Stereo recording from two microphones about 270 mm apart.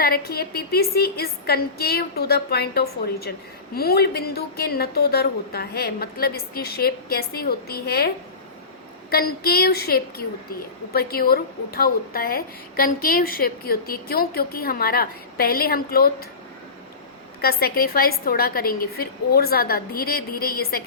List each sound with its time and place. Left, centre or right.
0.0 s a woman's voice: left
17.4 s a woman's voice: left